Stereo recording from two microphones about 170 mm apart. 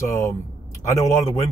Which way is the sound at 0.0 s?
15° left (ahead or behind).